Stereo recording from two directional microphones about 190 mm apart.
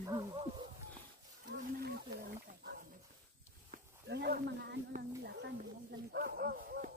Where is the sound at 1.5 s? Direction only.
55° right (ahead or behind).